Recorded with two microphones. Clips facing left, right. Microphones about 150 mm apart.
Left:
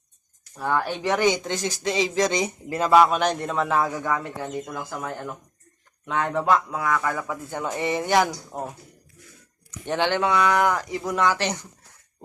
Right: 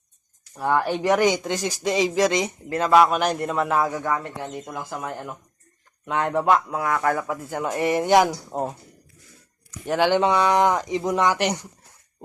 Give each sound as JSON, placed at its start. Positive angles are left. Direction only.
{"t": 0.5, "sound": "speech", "side_deg": -15}
{"t": 4.7, "sound": "speech", "side_deg": -10}
{"t": 7.2, "sound": "speech", "side_deg": -10}
{"t": 9.8, "sound": "speech", "side_deg": -5}
{"t": 10.1, "sound": "speech", "side_deg": -20}